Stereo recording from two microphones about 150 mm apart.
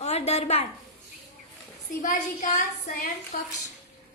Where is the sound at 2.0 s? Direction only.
60° left (ahead or behind).